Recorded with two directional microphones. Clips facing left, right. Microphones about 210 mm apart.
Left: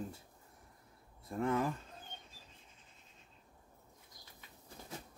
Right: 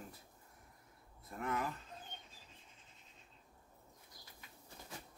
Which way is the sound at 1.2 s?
30° left (ahead or behind).